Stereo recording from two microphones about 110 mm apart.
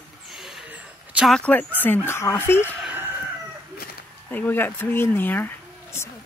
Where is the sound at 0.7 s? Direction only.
10° right (ahead or behind).